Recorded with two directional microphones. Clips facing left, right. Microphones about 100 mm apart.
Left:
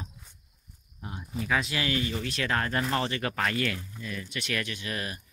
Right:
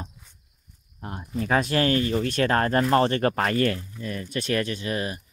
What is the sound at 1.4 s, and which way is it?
Speech, 50° right (ahead or behind).